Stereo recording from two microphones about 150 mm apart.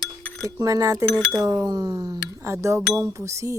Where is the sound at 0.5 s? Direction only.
20° right (ahead or behind).